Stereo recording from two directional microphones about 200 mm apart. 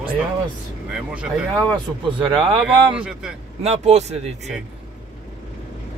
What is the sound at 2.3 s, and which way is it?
Speech, 25° right (ahead or behind).